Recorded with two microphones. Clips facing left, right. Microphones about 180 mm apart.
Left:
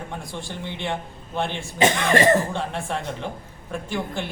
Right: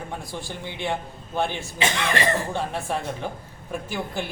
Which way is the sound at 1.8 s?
45° left (ahead or behind).